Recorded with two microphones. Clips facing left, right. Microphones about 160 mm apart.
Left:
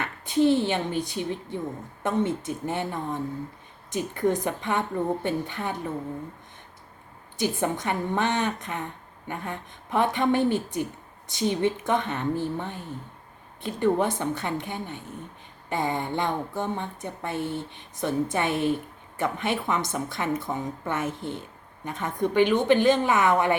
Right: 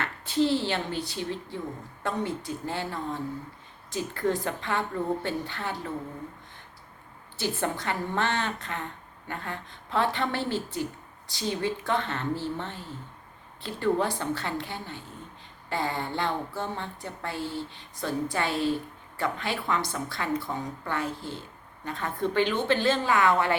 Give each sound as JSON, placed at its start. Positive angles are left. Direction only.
{"t": 0.0, "sound": "speech", "side_deg": 15}
{"t": 7.3, "sound": "a woman's voice", "side_deg": 20}